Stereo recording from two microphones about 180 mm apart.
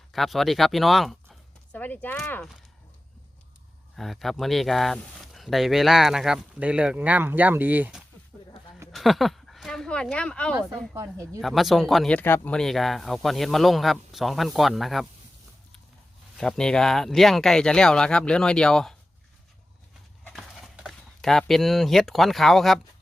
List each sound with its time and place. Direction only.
0.1 s speech: centre (ahead or behind)
3.9 s speech: centre (ahead or behind)
10.5 s speech: 15° right (ahead or behind)
11.3 s speech: centre (ahead or behind)
16.4 s speech: 5° left (ahead or behind)
20.2 s speech: centre (ahead or behind)